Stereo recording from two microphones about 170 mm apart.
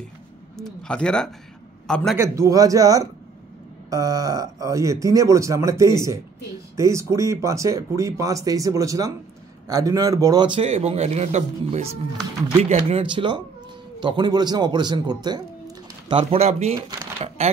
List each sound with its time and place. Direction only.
0.8 s speech: 5° left (ahead or behind)
2.1 s a man's voice: 15° right (ahead or behind); by 16.7 s 40° right (ahead or behind)